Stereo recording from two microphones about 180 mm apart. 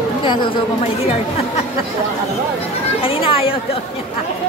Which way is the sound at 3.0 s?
30° left (ahead or behind).